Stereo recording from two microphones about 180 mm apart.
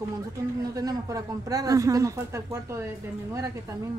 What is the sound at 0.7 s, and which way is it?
Speech, 20° right (ahead or behind).